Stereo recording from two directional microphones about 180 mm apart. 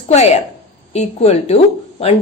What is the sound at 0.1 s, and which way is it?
A woman's voice, 40° left (ahead or behind).